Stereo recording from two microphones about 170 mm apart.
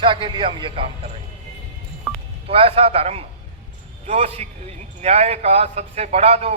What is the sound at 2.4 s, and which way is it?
A man's voice, 35° right (ahead or behind).